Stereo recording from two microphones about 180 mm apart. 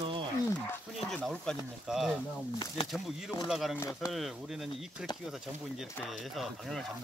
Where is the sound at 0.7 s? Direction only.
5° left (ahead or behind).